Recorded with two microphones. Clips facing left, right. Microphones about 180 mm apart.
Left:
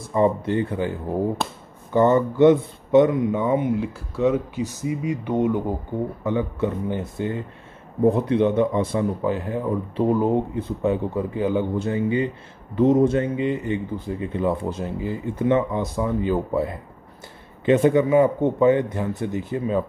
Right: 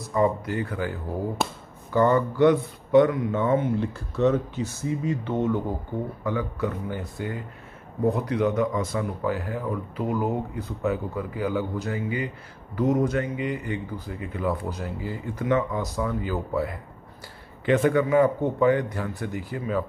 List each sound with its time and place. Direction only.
0.1 s speech: 25° left (ahead or behind)